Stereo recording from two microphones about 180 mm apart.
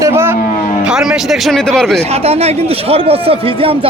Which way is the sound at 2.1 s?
35° right (ahead or behind).